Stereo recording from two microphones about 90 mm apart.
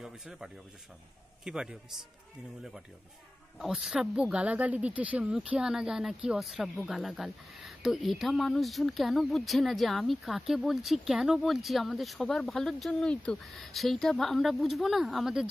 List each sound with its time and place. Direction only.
0.0 s a man's voice: 5° right (ahead or behind)
3.5 s speech: centre (ahead or behind)